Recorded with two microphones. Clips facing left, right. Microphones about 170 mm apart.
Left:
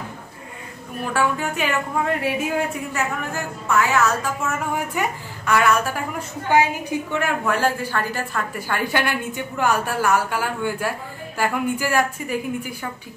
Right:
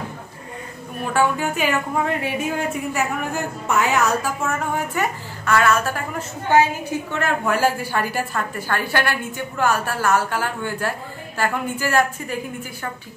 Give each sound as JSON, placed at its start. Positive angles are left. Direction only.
{"t": 1.1, "sound": "speech", "side_deg": 0}
{"t": 3.6, "sound": "a woman's voice", "side_deg": -20}
{"t": 4.4, "sound": "a woman's voice", "side_deg": 10}
{"t": 7.4, "sound": "a woman's voice", "side_deg": -5}
{"t": 8.5, "sound": "a woman's voice", "side_deg": 15}